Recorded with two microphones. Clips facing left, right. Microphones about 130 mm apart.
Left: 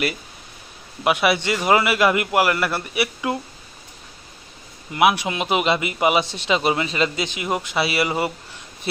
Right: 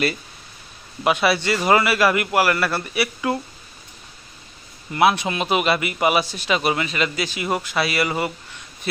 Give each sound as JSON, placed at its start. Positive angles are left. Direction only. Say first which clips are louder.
{"t": 1.0, "sound": "a man's voice", "louder": "even", "side_deg": 15}
{"t": 4.9, "sound": "a man's voice", "louder": "even", "side_deg": 10}